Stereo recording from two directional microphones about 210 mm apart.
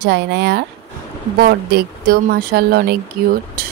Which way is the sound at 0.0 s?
55° right (ahead or behind).